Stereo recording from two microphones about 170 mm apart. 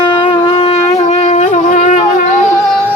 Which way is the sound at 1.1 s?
40° left (ahead or behind).